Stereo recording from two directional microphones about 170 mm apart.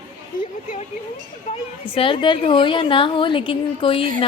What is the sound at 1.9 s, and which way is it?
A woman's voice, 30° left (ahead or behind).